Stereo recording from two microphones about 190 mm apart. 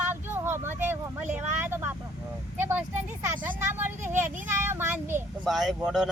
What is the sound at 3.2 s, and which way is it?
Speech, 10° right (ahead or behind).